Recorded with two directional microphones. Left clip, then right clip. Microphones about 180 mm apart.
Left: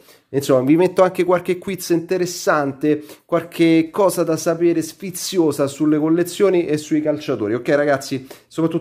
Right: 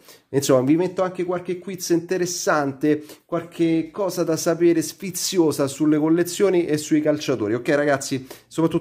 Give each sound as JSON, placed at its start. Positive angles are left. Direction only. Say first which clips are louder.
{"t": 0.3, "sound": "speech", "louder": "left 2 dB", "side_deg": 0}
{"t": 0.7, "sound": "speech", "louder": "left 8 dB", "side_deg": 25}
{"t": 1.8, "sound": "speech", "louder": "even", "side_deg": 10}
{"t": 3.3, "sound": "speech", "louder": "left 6 dB", "side_deg": 25}
{"t": 4.1, "sound": "speech", "louder": "left 3 dB", "side_deg": 10}
{"t": 6.9, "sound": "speech", "louder": "left 1 dB", "side_deg": -10}
{"t": 7.3, "sound": "speech", "louder": "left 3 dB", "side_deg": 0}